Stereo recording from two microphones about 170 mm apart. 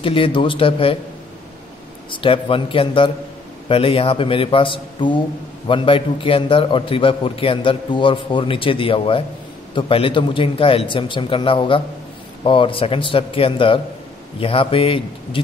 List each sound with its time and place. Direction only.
0.0 s a man's voice: 30° left (ahead or behind)
2.0 s a man's voice: 30° left (ahead or behind)